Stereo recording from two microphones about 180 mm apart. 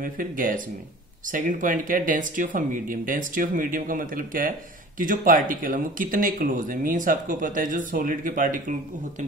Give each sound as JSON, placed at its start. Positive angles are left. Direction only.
{"t": 0.0, "sound": "speech", "side_deg": -50}